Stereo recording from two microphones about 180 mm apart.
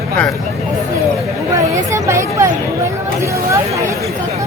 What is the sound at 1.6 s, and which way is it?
Speech, 15° right (ahead or behind).